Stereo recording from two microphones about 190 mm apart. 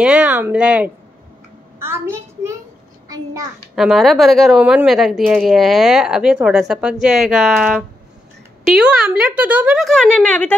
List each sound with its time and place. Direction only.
0.0 s speech: 5° right (ahead or behind)
1.8 s a sound: 15° right (ahead or behind)
3.1 s a child's voice: 20° right (ahead or behind)
3.7 s speech: centre (ahead or behind)